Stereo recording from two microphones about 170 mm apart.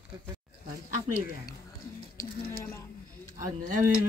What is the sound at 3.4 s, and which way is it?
Speech, 50° right (ahead or behind).